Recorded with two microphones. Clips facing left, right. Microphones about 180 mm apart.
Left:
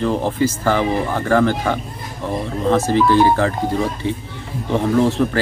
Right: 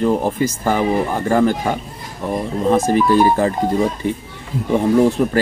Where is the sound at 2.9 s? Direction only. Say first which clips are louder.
Even; 15° right (ahead or behind).